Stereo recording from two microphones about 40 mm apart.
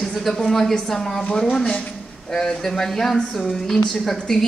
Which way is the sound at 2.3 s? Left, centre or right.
Centre.